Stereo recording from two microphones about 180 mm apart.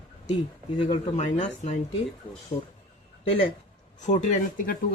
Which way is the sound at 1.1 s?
40° left (ahead or behind).